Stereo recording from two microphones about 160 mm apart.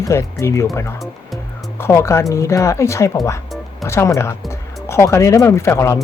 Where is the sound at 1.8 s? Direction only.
15° left (ahead or behind).